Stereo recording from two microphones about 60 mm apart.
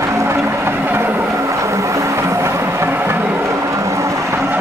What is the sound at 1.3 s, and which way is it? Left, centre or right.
Music, right.